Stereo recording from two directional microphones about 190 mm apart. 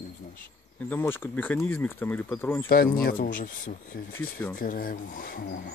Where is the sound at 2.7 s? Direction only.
50° left (ahead or behind).